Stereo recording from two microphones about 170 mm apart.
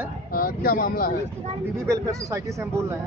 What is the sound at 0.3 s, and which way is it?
Speech, 60° left (ahead or behind).